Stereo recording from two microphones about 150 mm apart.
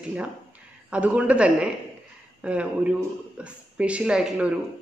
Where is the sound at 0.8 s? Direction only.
10° right (ahead or behind).